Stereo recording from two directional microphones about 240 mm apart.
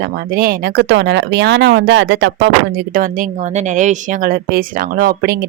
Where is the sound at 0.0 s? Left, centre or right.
Right.